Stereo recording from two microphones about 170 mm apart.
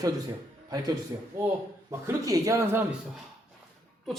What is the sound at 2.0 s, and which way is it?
Speech, 20° right (ahead or behind).